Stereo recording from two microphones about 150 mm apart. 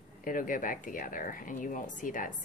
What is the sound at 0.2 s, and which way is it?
Speech, 65° left (ahead or behind).